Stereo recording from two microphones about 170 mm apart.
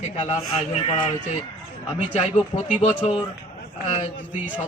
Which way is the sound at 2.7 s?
40° left (ahead or behind).